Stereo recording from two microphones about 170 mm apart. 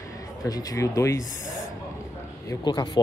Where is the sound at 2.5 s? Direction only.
25° left (ahead or behind).